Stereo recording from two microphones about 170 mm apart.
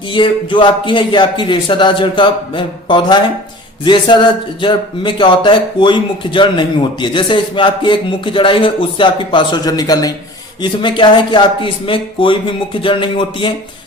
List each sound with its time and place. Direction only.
0.1 s speech: 30° left (ahead or behind)